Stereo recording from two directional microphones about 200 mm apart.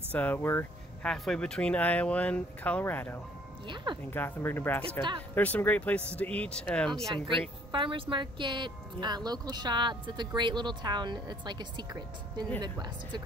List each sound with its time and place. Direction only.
0.1 s speech: 10° left (ahead or behind)
3.6 s speech: 25° right (ahead or behind)
4.1 s speech: 10° left (ahead or behind)
7.2 s speech: 25° right (ahead or behind)